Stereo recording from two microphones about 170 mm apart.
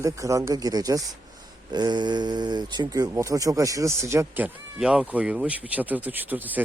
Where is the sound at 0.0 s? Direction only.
20° right (ahead or behind).